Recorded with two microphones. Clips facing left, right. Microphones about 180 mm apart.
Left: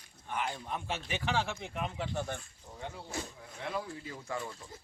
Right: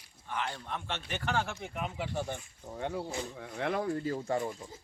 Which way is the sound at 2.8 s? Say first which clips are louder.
Right 6 dB; 60° right (ahead or behind).